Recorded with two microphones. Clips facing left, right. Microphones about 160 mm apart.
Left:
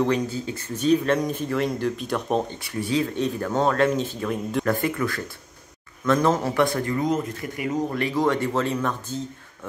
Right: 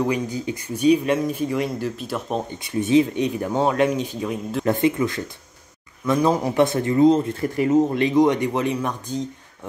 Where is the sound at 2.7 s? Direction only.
20° right (ahead or behind).